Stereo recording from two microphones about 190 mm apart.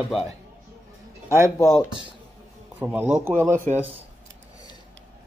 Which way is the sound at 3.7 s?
40° right (ahead or behind).